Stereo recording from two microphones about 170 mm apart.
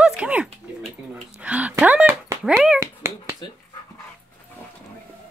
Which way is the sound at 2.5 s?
5° right (ahead or behind).